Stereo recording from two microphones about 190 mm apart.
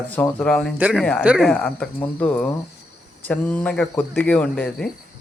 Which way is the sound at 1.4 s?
5° left (ahead or behind).